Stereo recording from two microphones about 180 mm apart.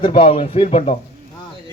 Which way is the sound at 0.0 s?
30° left (ahead or behind).